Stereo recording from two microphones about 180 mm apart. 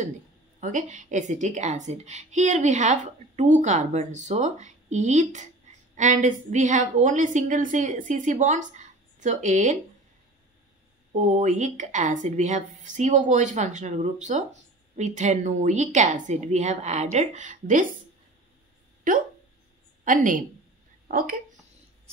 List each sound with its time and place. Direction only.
0.6 s a woman's voice: 45° right (ahead or behind)
11.1 s a woman's voice: 40° right (ahead or behind)
19.1 s a woman's voice: 45° right (ahead or behind)